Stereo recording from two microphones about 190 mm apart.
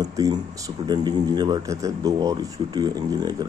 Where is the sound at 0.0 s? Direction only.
20° right (ahead or behind).